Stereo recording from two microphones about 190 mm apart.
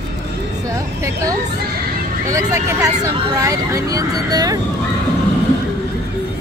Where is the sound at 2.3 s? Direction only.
15° right (ahead or behind).